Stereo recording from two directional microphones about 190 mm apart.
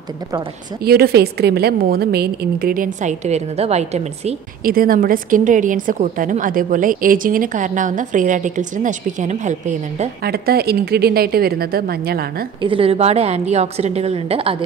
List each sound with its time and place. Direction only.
0.8 s a woman's voice: 55° right (ahead or behind); by 4.4 s 35° right (ahead or behind)
4.6 s a woman's voice: 50° right (ahead or behind)
10.2 s a woman's voice: 55° right (ahead or behind)
12.6 s a woman's voice: 30° right (ahead or behind)